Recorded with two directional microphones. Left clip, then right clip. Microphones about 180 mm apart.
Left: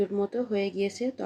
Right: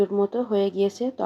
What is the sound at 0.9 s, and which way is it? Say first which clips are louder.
Speech: right 4 dB; 10° right (ahead or behind).